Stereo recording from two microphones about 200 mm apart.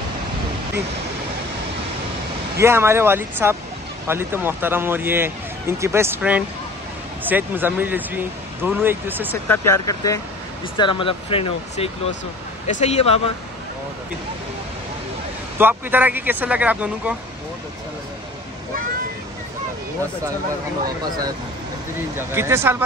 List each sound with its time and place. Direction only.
2.5 s speech: 10° right (ahead or behind)
9.3 s speech: 10° left (ahead or behind); by 13.2 s 30° left (ahead or behind)
15.5 s speech: 10° right (ahead or behind)
22.3 s speech: 10° right (ahead or behind)